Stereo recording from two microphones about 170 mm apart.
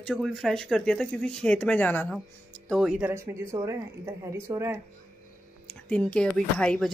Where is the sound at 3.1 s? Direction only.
15° right (ahead or behind).